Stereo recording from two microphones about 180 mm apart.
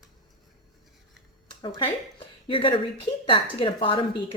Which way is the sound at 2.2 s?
30° left (ahead or behind).